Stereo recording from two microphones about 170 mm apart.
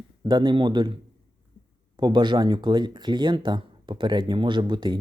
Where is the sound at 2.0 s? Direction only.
25° right (ahead or behind).